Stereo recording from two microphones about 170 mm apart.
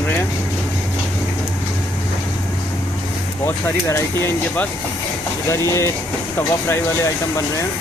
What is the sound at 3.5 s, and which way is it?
Speech, 15° left (ahead or behind).